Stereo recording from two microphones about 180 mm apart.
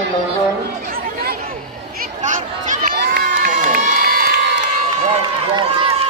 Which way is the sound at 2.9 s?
55° right (ahead or behind).